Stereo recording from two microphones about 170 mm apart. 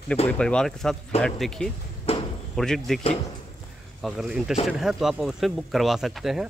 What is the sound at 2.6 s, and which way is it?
Speech, centre (ahead or behind).